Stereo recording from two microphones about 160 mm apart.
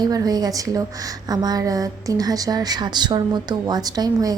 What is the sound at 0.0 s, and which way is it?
A woman's voice, 25° right (ahead or behind).